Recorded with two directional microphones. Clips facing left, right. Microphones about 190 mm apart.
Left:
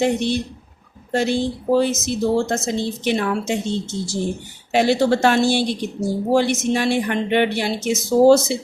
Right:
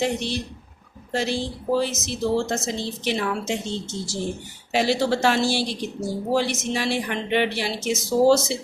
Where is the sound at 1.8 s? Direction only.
55° left (ahead or behind).